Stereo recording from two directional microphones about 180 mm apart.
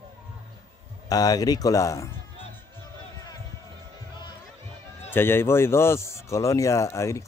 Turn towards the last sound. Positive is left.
turn(degrees=15)  # may be behind; listen again after turning